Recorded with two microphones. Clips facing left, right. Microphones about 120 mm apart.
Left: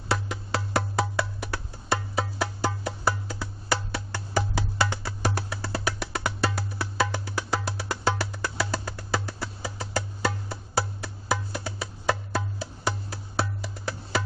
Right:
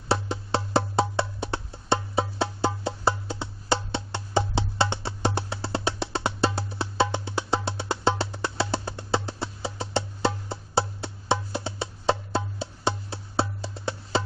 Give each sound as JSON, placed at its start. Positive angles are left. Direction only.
{"t": 0.1, "sound": "music", "side_deg": -30}